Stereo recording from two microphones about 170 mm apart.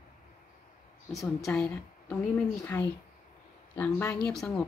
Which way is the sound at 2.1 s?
15° left (ahead or behind).